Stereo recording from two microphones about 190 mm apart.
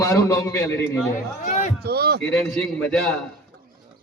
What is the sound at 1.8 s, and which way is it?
Speech, 55° right (ahead or behind).